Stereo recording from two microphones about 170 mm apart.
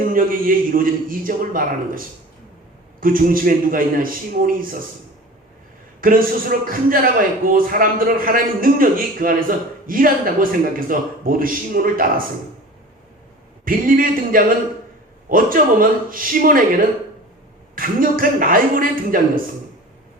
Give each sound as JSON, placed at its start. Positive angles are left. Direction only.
{"t": 0.0, "sound": "a man's voice", "side_deg": -55}
{"t": 3.0, "sound": "a man's voice", "side_deg": -55}
{"t": 6.0, "sound": "a man's voice", "side_deg": -55}
{"t": 13.7, "sound": "a man's voice", "side_deg": -55}
{"t": 17.7, "sound": "a man's voice", "side_deg": -55}